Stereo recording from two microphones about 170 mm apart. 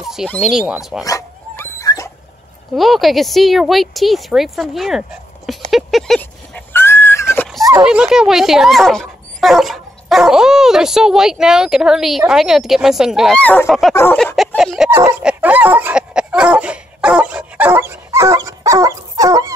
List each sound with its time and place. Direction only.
0.0 s a sound: centre (ahead or behind)
0.4 s speech: 5° right (ahead or behind)
1.0 s dog: 15° left (ahead or behind)
2.7 s speech: centre (ahead or behind)
5.7 s horse: centre (ahead or behind); by 7.4 s 15° left (ahead or behind)
7.8 s speech: 5° right (ahead or behind)
13.4 s speech: 10° left (ahead or behind)
14.9 s speech: 15° right (ahead or behind)
15.2 s a sound: 10° right (ahead or behind)